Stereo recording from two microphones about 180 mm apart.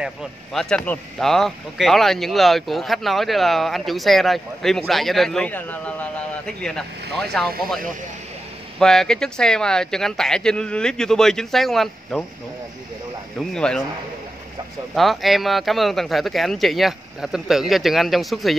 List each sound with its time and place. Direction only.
0.0 s speech: centre (ahead or behind)
8.7 s speech: 5° left (ahead or behind)
13.4 s speech: 5° left (ahead or behind)
15.0 s speech: centre (ahead or behind)